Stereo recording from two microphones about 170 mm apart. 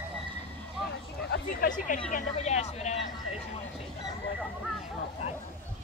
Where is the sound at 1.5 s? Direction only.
55° left (ahead or behind).